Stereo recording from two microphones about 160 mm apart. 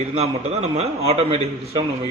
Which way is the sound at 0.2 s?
40° right (ahead or behind).